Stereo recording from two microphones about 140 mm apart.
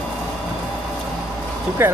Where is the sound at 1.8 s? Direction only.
15° right (ahead or behind).